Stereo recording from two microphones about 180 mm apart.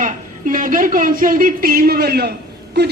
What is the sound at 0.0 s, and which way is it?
A man's voice, 50° right (ahead or behind).